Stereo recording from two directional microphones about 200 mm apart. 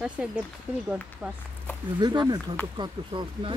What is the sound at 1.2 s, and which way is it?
Speech, 5° right (ahead or behind).